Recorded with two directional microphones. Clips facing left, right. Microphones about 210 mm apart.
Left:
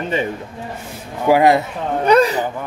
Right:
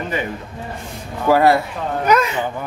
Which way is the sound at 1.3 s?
15° left (ahead or behind).